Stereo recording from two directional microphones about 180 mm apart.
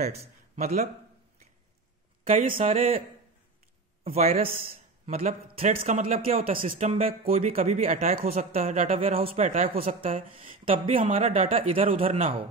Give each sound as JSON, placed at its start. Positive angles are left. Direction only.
{"t": 0.0, "sound": "speech", "side_deg": -35}
{"t": 2.4, "sound": "speech", "side_deg": -45}
{"t": 4.0, "sound": "a man's voice", "side_deg": -35}